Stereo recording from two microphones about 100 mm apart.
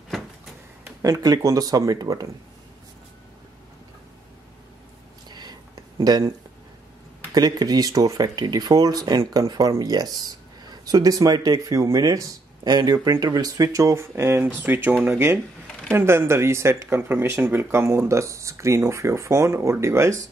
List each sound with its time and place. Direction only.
1.0 s speech: 35° right (ahead or behind)
5.3 s a sound: 45° right (ahead or behind)
7.3 s speech: 40° right (ahead or behind)